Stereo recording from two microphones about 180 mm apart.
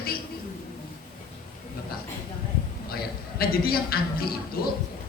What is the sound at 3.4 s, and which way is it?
Speech, 55° left (ahead or behind).